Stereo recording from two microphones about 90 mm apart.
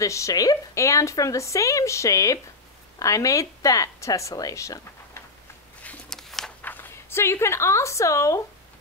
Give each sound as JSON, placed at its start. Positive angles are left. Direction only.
{"t": 0.0, "sound": "a woman's voice", "side_deg": 35}
{"t": 6.0, "sound": "a sound", "side_deg": 5}
{"t": 6.6, "sound": "speech", "side_deg": 20}